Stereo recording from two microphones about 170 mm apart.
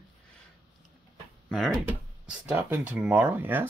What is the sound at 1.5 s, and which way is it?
Speech, centre (ahead or behind).